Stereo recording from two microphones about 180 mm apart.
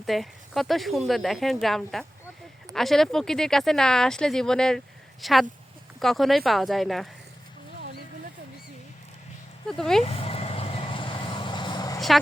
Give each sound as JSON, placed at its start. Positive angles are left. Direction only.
{"t": 0.0, "sound": "speech", "side_deg": 0}
{"t": 9.6, "sound": "speech", "side_deg": 5}
{"t": 10.0, "sound": "vehicle", "side_deg": 35}
{"t": 11.9, "sound": "a sound", "side_deg": 0}